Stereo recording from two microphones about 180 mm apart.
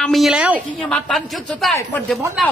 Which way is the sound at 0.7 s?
5° left (ahead or behind).